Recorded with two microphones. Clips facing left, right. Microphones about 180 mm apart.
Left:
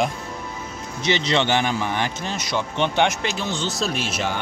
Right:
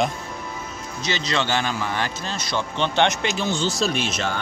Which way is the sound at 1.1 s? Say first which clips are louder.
Left 3 dB; 20° left (ahead or behind).